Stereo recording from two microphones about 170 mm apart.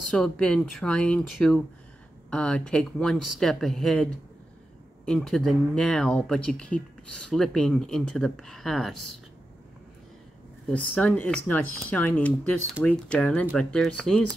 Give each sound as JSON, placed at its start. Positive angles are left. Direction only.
{"t": 0.1, "sound": "speech", "side_deg": 5}
{"t": 10.7, "sound": "speech", "side_deg": 5}